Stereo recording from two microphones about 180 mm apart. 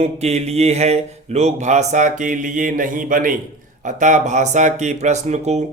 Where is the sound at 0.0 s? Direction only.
35° right (ahead or behind).